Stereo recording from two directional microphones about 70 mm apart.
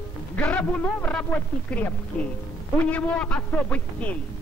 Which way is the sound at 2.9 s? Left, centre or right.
Centre.